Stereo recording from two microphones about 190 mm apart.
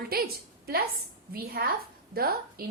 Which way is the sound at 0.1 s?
50° right (ahead or behind).